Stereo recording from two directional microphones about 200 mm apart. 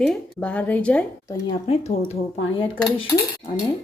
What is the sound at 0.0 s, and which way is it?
A woman's voice, 5° left (ahead or behind).